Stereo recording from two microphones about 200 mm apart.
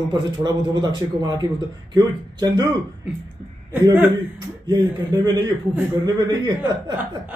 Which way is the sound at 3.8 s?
10° right (ahead or behind).